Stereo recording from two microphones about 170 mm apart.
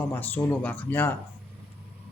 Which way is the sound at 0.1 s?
10° left (ahead or behind).